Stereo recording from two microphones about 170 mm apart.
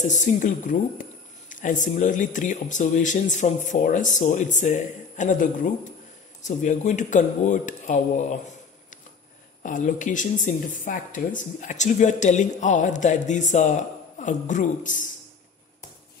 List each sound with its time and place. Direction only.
0.0 s speech: 45° left (ahead or behind)
9.6 s speech: 50° left (ahead or behind)